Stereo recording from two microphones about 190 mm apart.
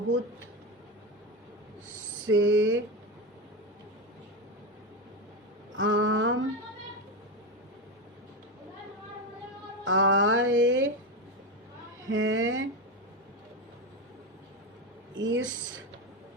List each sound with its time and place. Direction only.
2.2 s speech: 85° right
5.7 s a sound: 90° right
9.8 s speech: 90° right
12.0 s speech: 90° right
15.2 s speech: 80° right